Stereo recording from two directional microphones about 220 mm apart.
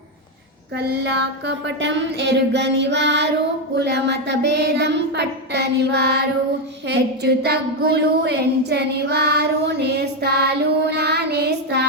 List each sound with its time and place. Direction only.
0.8 s a woman's voice: 50° right (ahead or behind)